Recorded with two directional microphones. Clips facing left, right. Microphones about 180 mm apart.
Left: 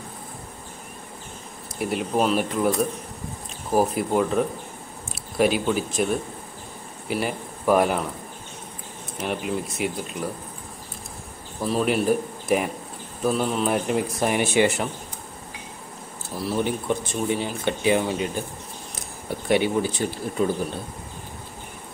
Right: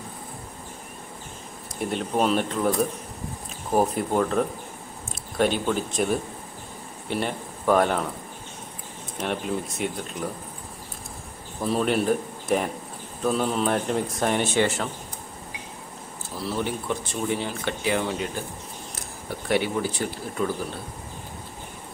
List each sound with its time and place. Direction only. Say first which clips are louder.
1.8 s speech: left 1 dB; 5° left (ahead or behind)
9.2 s speech: left 1 dB; 5° left (ahead or behind)
11.6 s speech: left 1 dB; 5° left (ahead or behind)
16.4 s speech: left 3 dB; 15° left (ahead or behind)
19.4 s speech: left 3 dB; 20° left (ahead or behind)